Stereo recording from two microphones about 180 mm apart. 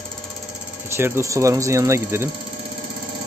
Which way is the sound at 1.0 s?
15° right (ahead or behind).